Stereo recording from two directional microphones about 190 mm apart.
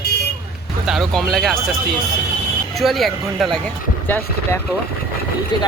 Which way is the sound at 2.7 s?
Centre (ahead or behind).